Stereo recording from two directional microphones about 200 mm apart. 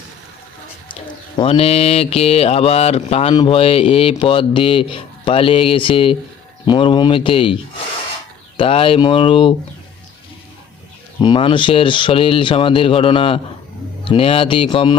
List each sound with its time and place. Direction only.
1.4 s mantra: 30° left (ahead or behind)
3.3 s speech: 25° left (ahead or behind)
8.5 s speech: 25° left (ahead or behind)
11.2 s speech: 25° left (ahead or behind)